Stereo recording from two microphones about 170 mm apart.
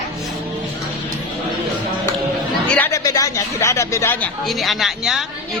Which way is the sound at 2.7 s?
20° left (ahead or behind).